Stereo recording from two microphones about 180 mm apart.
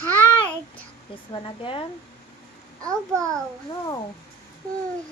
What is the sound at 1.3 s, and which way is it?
Speech, 30° left (ahead or behind).